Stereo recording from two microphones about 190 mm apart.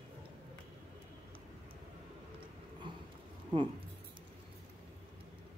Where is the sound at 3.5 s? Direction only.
25° right (ahead or behind).